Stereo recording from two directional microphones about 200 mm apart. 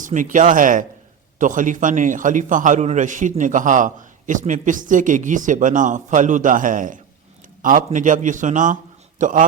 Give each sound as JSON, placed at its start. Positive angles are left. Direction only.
{"t": 0.0, "sound": "a man's voice", "side_deg": -40}